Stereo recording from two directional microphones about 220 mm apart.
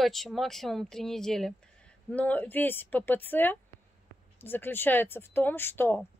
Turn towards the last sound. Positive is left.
turn(degrees=10)  # may be behind; listen again after turning